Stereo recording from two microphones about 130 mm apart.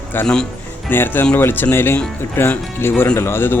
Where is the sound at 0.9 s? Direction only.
15° left (ahead or behind).